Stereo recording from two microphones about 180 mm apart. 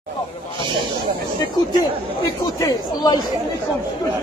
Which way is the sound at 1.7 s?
20° left (ahead or behind).